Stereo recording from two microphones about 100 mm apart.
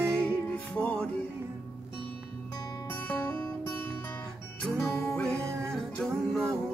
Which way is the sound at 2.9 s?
15° left (ahead or behind).